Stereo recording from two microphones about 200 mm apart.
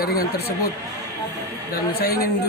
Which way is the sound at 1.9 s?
50° left (ahead or behind).